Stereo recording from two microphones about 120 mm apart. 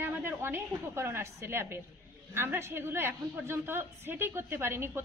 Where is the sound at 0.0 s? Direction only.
15° right (ahead or behind).